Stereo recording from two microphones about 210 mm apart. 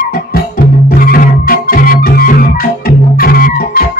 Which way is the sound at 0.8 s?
45° left (ahead or behind).